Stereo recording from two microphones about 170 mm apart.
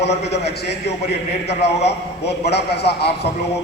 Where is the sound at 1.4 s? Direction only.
75° left (ahead or behind).